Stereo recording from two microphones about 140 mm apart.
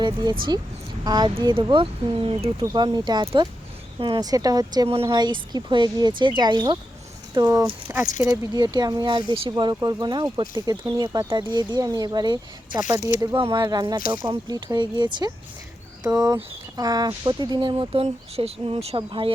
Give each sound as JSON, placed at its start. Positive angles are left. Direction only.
{"t": 0.0, "sound": "speech", "side_deg": -35}
{"t": 2.7, "sound": "speech", "side_deg": -30}
{"t": 7.3, "sound": "speech", "side_deg": -20}